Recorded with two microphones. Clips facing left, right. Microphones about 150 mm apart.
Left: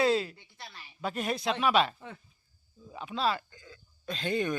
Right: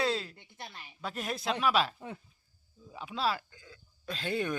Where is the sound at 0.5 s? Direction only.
20° right (ahead or behind).